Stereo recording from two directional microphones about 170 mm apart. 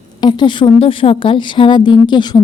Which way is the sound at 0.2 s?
25° left (ahead or behind).